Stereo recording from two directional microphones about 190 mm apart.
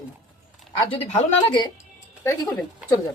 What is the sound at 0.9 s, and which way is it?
Speech, 30° left (ahead or behind).